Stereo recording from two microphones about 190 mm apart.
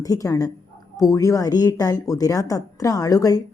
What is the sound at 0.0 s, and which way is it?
A woman's voice, 20° left (ahead or behind).